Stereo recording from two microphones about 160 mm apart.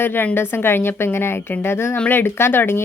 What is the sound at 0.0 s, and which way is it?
A woman's voice, 15° left (ahead or behind).